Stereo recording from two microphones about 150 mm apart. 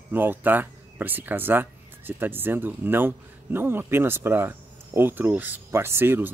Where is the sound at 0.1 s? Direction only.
15° right (ahead or behind).